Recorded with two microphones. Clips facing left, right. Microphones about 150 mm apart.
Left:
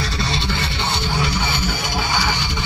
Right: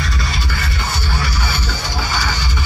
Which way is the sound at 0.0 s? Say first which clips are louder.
Left 1 dB; 30° left (ahead or behind).